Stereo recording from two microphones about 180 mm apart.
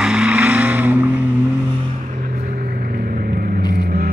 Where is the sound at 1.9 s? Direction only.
45° right (ahead or behind).